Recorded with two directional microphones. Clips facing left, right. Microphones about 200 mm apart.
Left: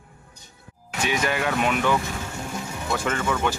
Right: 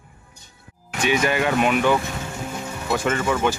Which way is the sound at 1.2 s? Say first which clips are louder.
Right 3 dB; 5° right (ahead or behind).